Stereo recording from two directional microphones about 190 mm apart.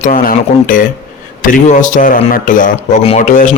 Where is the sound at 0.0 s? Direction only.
45° left (ahead or behind).